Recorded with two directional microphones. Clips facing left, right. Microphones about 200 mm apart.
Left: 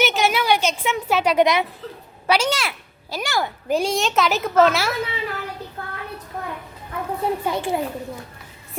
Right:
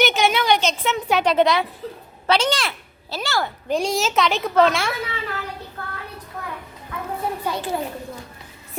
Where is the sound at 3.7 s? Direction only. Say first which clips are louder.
Left 1 dB; centre (ahead or behind).